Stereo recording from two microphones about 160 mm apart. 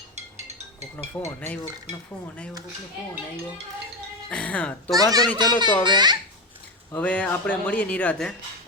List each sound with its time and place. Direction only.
0.3 s music: 45° right (ahead or behind)
0.9 s speech: 15° left (ahead or behind)
4.3 s speech: 5° left (ahead or behind)
5.4 s a child's voice: 25° right (ahead or behind)
6.9 s speech: 10° left (ahead or behind)